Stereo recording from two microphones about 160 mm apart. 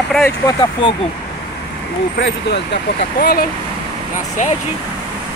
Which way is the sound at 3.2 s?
70° left (ahead or behind).